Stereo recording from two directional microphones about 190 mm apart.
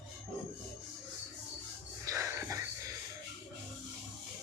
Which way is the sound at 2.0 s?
15° right (ahead or behind).